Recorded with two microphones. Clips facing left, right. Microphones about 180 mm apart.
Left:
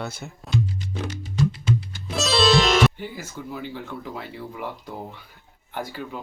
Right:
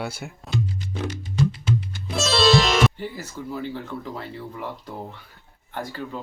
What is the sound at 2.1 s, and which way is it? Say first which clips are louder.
Speech: right 1 dB; centre (ahead or behind).